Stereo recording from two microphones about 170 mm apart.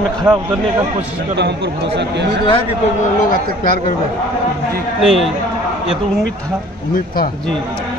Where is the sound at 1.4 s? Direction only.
90° right.